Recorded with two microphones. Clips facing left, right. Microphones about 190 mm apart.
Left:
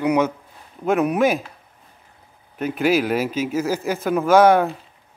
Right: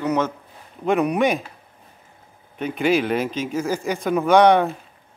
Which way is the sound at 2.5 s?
5° left (ahead or behind).